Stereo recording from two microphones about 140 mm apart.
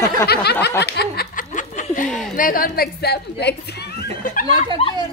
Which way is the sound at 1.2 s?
70° left (ahead or behind).